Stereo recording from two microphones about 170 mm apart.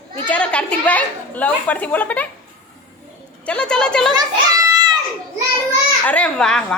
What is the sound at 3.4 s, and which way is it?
Speech, 5° left (ahead or behind).